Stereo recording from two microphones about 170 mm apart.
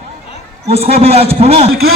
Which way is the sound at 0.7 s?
35° right (ahead or behind).